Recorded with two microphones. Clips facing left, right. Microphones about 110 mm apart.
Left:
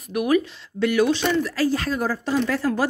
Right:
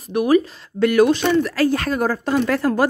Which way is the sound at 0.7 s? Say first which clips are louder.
Right 5 dB; 50° right (ahead or behind).